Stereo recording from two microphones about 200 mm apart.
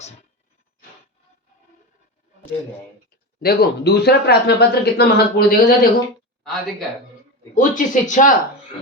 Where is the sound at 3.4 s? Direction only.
50° left (ahead or behind).